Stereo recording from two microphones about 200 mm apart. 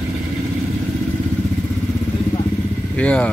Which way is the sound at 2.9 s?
5° left (ahead or behind).